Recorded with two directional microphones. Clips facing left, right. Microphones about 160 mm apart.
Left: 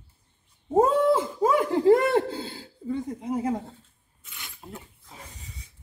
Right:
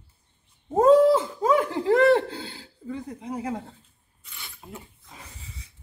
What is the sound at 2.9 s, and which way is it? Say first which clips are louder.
Speech: left 4 dB; 5° left (ahead or behind).